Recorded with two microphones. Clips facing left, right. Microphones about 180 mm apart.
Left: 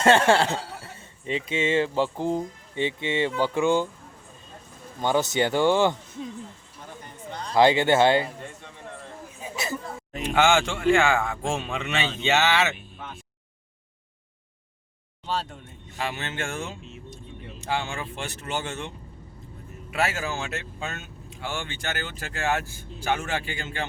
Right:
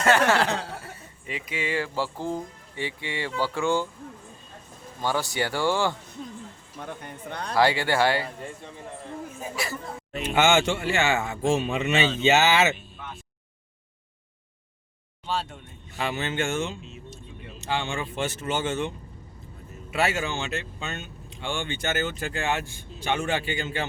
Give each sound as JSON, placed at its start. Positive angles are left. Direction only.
{"t": 0.0, "sound": "speech", "side_deg": 30}
{"t": 4.9, "sound": "speech", "side_deg": 20}
{"t": 6.7, "sound": "a sound", "side_deg": -60}
{"t": 7.5, "sound": "speech", "side_deg": 20}
{"t": 9.6, "sound": "speech", "side_deg": 20}
{"t": 10.3, "sound": "speech", "side_deg": 0}
{"t": 16.0, "sound": "speech", "side_deg": 0}